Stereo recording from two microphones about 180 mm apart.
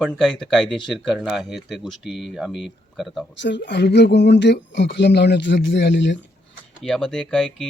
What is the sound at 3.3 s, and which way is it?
Speech, 75° left (ahead or behind).